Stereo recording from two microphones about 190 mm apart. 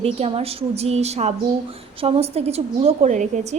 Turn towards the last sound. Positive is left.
turn(degrees=-40)  # may be behind; listen again after turning